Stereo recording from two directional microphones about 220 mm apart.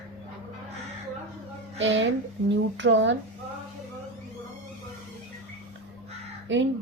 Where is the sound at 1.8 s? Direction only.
55° right (ahead or behind).